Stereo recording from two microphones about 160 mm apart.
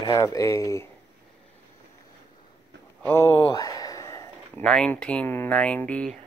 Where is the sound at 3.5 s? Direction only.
20° left (ahead or behind).